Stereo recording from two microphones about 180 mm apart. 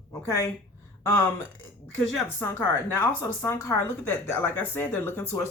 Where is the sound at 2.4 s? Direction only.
15° left (ahead or behind).